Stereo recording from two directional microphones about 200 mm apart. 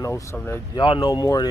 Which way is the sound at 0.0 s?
15° left (ahead or behind).